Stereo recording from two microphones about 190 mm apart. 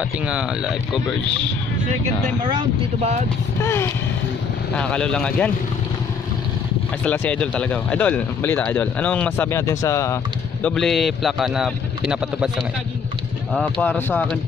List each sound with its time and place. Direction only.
0.3 s speech: 5° right (ahead or behind)
2.4 s speech: 25° right (ahead or behind)
3.6 s speech: 15° left (ahead or behind)
7.1 s speech: 5° left (ahead or behind)
10.6 s speech: centre (ahead or behind)
13.5 s speech: 5° left (ahead or behind)